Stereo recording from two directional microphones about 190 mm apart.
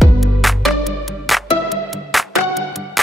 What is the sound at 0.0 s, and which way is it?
Music, centre (ahead or behind).